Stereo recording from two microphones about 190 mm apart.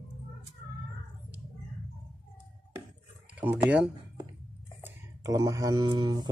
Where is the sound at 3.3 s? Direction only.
10° right (ahead or behind).